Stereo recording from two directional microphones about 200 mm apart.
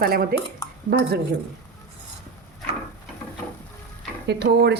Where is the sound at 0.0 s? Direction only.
50° right (ahead or behind).